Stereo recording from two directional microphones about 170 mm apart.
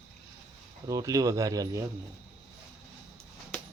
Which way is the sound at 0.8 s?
20° right (ahead or behind).